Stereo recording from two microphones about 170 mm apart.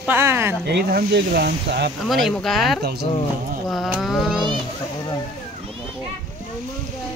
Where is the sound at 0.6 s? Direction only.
80° right.